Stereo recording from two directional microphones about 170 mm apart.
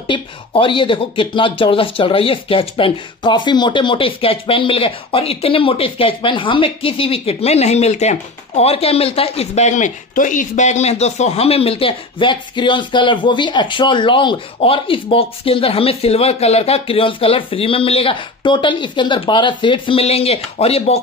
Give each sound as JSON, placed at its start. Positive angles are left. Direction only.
{"t": 0.0, "sound": "speech", "side_deg": 30}